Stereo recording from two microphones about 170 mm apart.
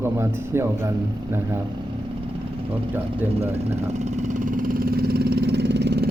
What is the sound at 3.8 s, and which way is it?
Vehicle, 40° right (ahead or behind).